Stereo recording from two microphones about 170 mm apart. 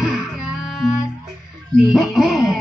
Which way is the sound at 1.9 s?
Centre (ahead or behind).